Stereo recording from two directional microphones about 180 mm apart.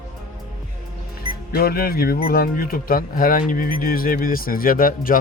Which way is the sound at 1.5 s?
55° left (ahead or behind).